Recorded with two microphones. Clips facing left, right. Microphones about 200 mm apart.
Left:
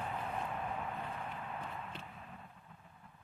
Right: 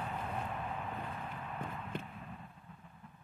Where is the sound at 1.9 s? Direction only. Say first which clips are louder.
Right 8 dB; 50° right (ahead or behind).